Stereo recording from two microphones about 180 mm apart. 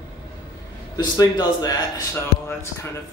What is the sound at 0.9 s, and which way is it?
Speech, 20° left (ahead or behind).